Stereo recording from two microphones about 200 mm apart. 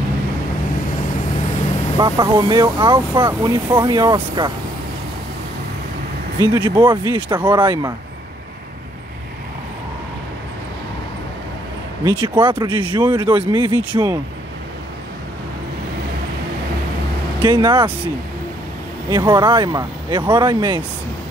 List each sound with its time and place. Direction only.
2.0 s speech: 20° right (ahead or behind)
6.4 s speech: 20° right (ahead or behind)
12.0 s speech: 25° right (ahead or behind)
17.4 s speech: 25° right (ahead or behind)
19.0 s speech: 20° right (ahead or behind)